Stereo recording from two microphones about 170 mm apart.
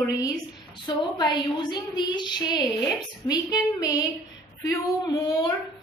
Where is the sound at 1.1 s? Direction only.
25° left (ahead or behind).